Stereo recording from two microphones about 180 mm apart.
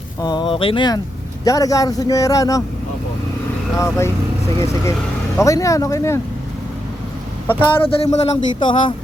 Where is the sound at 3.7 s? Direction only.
15° left (ahead or behind).